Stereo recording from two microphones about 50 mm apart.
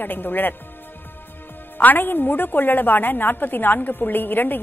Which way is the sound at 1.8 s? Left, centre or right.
Left.